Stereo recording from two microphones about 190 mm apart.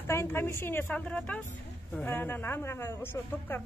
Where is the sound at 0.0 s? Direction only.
10° left (ahead or behind).